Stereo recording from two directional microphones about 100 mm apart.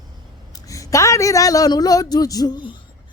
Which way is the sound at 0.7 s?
30° left (ahead or behind).